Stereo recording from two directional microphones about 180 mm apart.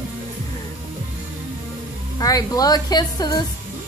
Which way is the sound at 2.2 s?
20° left (ahead or behind).